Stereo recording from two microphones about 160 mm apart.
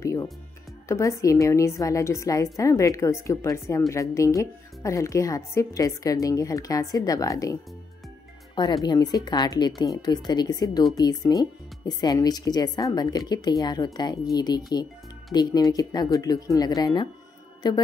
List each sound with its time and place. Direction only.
0.0 s music: 20° left (ahead or behind)
0.8 s a woman's voice: 20° left (ahead or behind)
8.8 s a woman's voice: 25° left (ahead or behind)